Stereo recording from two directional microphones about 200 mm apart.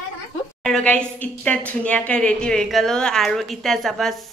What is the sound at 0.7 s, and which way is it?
A woman's voice, 5° left (ahead or behind).